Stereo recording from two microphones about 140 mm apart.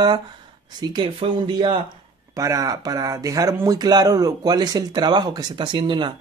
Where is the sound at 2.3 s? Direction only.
25° right (ahead or behind).